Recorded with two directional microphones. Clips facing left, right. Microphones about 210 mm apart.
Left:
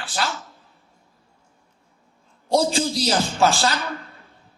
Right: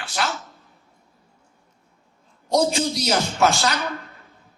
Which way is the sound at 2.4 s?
30° left (ahead or behind).